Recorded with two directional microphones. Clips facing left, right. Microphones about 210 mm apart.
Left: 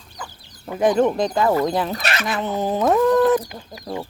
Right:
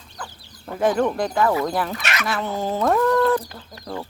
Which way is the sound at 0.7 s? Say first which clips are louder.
Left 3 dB; 20° left (ahead or behind).